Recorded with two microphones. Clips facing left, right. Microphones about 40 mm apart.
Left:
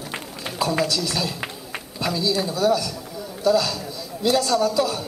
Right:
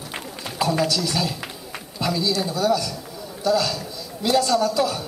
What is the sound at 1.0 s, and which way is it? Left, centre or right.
A man's voice, centre.